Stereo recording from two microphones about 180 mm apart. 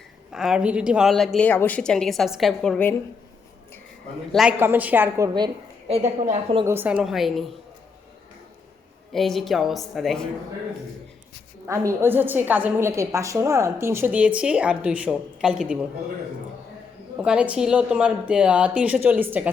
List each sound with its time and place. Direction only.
0.3 s a woman's voice: 5° right (ahead or behind)
4.3 s a woman's voice: centre (ahead or behind); by 5.5 s 20° right (ahead or behind)
5.9 s a woman's voice: 35° right (ahead or behind)
6.7 s a woman's voice: 10° right (ahead or behind)
9.1 s a woman's voice: centre (ahead or behind)
11.7 s a woman's voice: 15° right (ahead or behind)
17.2 s a woman's voice: 5° right (ahead or behind)